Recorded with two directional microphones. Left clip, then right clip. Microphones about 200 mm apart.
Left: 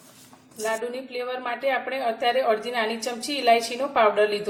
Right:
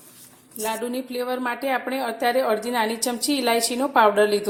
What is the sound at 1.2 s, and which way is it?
A woman's voice, 40° right (ahead or behind).